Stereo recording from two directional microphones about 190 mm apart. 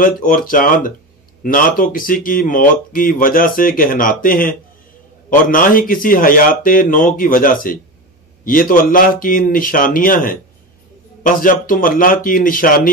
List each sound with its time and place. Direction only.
0.0 s speech: 45° left (ahead or behind)